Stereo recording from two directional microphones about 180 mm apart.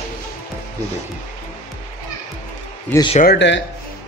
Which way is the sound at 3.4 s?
80° left.